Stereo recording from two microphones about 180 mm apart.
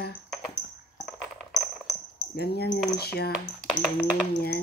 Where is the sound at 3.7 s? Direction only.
5° left (ahead or behind).